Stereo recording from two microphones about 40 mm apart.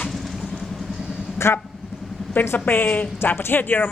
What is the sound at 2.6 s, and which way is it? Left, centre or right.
Speech, left.